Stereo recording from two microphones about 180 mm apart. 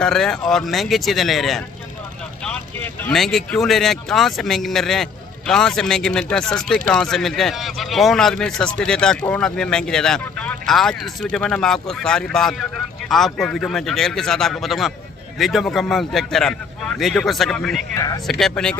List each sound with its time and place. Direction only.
0.0 s speech: centre (ahead or behind)
17.9 s speech: 20° left (ahead or behind)
18.2 s speech: centre (ahead or behind)